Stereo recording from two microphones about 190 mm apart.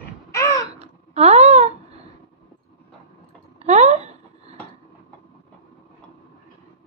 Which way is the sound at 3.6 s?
35° right (ahead or behind).